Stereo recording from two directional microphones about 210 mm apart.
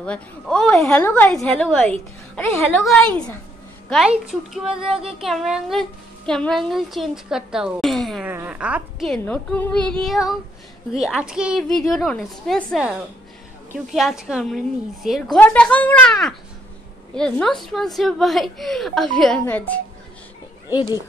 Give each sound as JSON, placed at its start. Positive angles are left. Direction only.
{"t": 0.0, "sound": "speech", "side_deg": 5}
{"t": 13.9, "sound": "speech", "side_deg": 0}
{"t": 20.7, "sound": "speech", "side_deg": 20}